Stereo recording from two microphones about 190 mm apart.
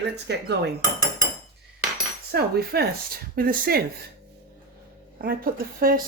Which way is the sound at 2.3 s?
55° right (ahead or behind).